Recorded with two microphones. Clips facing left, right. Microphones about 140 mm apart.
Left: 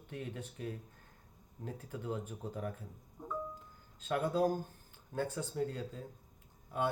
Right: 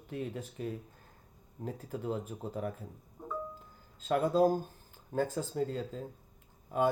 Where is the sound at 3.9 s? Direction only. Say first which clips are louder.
Right 5 dB; 90° right.